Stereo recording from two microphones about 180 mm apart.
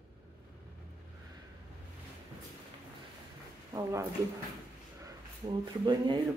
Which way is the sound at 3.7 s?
15° right (ahead or behind).